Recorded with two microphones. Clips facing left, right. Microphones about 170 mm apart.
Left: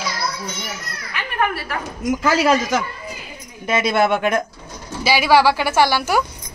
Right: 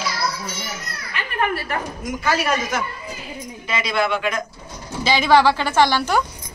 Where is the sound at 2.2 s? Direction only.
90° left.